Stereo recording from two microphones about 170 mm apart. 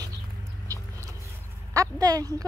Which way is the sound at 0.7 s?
20° right (ahead or behind).